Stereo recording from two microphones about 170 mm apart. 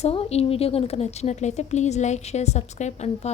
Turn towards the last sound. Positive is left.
turn(degrees=40)  # may be behind; listen again after turning